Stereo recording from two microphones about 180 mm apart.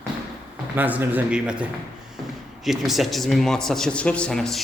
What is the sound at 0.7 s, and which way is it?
A man's voice, 10° right (ahead or behind).